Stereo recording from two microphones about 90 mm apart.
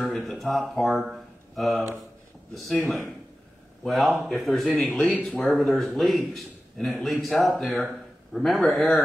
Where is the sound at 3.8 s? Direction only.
Centre (ahead or behind).